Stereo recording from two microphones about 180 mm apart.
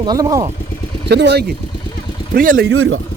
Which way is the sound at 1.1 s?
70° right (ahead or behind).